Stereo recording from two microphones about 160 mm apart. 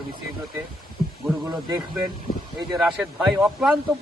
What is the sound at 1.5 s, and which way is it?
Speech, 25° right (ahead or behind).